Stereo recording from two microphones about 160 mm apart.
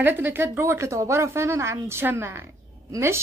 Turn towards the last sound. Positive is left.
turn(degrees=-15)  # may be behind; listen again after turning